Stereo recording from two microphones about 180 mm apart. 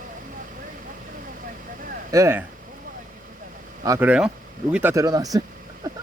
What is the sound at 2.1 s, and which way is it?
Speech, 15° right (ahead or behind).